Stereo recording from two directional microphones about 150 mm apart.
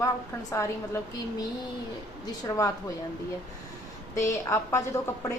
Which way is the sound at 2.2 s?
20° left (ahead or behind).